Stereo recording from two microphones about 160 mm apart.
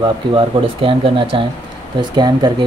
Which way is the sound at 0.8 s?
35° right (ahead or behind).